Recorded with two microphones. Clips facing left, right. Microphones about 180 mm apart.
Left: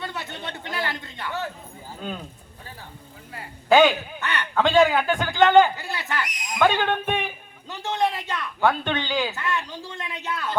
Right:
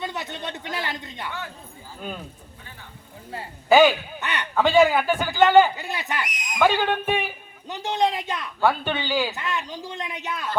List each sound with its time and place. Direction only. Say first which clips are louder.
0.0 s a sound: right 2 dB; 20° right (ahead or behind)
3.7 s speech: right 1 dB; 5° right (ahead or behind)
4.2 s speech: left 3 dB; 20° right (ahead or behind)
4.5 s a man's voice: right 1 dB; 5° right (ahead or behind)
5.7 s a man's voice: even; 20° right (ahead or behind)
7.7 s a man's voice: right 1 dB; 20° right (ahead or behind)
9.3 s a man's voice: left 1 dB; 20° right (ahead or behind)